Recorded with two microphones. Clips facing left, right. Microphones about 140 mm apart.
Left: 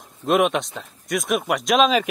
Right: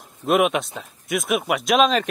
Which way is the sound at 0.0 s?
5° right (ahead or behind).